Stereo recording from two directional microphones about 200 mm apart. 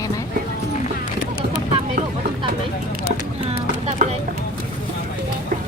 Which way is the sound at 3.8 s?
30° right (ahead or behind).